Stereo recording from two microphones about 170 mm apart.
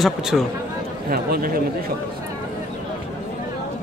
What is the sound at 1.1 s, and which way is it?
Speech, 60° right (ahead or behind).